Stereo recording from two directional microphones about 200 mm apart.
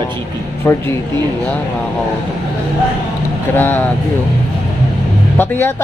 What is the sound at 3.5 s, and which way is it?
Speech, 10° left (ahead or behind).